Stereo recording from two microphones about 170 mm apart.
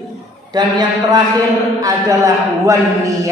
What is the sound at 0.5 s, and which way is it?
Speech, 25° right (ahead or behind).